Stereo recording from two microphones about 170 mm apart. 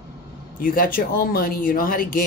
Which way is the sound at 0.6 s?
55° left (ahead or behind).